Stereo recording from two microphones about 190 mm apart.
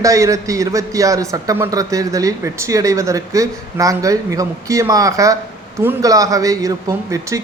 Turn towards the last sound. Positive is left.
turn(degrees=-15)  # may be behind; listen again after turning